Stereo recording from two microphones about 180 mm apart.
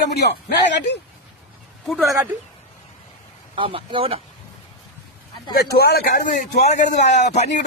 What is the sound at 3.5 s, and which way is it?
Speech, 30° right (ahead or behind).